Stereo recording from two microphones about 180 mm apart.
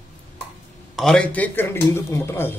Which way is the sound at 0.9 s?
5° left (ahead or behind).